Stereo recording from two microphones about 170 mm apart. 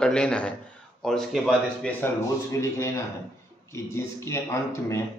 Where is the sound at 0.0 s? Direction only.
5° left (ahead or behind).